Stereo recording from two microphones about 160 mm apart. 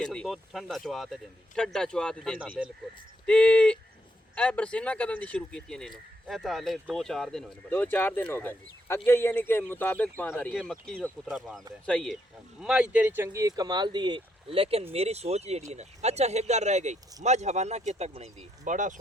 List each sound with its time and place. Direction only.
0.0 s speech: 5° left (ahead or behind)
12.5 s speech: 5° right (ahead or behind); by 18.9 s 50° right (ahead or behind)